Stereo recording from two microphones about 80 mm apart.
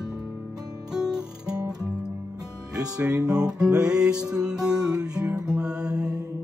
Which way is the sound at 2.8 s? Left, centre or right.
Centre.